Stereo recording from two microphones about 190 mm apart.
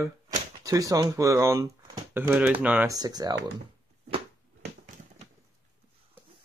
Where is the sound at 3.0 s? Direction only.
20° right (ahead or behind).